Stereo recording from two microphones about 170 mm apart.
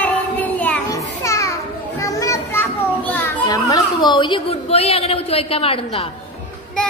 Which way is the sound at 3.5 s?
25° left (ahead or behind).